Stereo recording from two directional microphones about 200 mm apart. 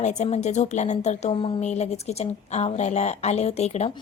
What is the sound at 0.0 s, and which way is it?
A woman's voice, 35° left (ahead or behind).